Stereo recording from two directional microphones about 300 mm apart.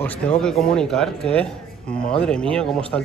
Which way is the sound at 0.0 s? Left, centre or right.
Centre.